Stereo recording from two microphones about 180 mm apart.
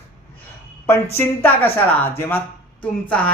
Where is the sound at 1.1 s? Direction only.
10° left (ahead or behind).